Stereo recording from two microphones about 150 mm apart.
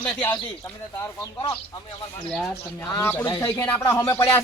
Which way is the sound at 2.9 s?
15° left (ahead or behind).